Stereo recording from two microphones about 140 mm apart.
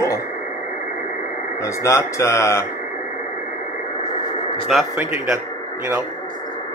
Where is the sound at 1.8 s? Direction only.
20° left (ahead or behind).